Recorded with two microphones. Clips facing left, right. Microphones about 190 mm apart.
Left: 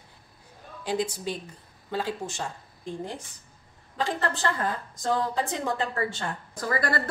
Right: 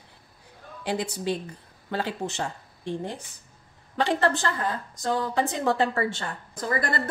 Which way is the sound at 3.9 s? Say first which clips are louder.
Right 5 dB; 75° right (ahead or behind).